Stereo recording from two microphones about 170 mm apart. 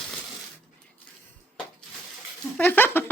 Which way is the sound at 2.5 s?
10° left (ahead or behind).